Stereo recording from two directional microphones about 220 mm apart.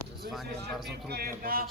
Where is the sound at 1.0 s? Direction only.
45° right (ahead or behind).